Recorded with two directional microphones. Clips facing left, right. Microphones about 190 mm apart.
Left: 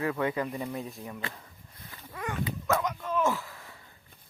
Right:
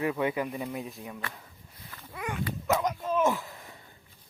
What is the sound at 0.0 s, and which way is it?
Speech, 15° right (ahead or behind).